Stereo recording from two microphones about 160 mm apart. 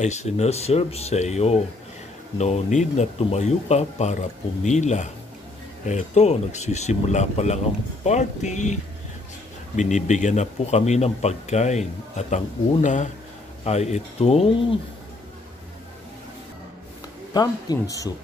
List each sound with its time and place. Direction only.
0.0 s speech: 45° left (ahead or behind)
9.8 s speech: 50° left (ahead or behind)
17.3 s speech: 25° left (ahead or behind)